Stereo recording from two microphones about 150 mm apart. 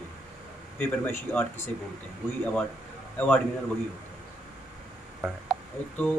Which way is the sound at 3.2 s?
10° left (ahead or behind).